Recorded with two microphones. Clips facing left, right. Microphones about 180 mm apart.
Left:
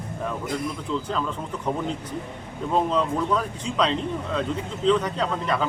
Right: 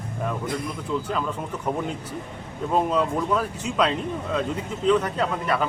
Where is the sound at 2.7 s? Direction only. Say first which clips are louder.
Right 1 dB; 10° right (ahead or behind).